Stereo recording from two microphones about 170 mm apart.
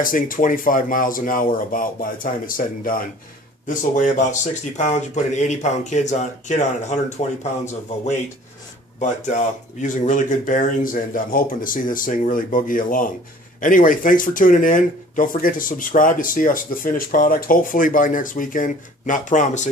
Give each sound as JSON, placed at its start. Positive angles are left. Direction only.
{"t": 0.0, "sound": "speech", "side_deg": 55}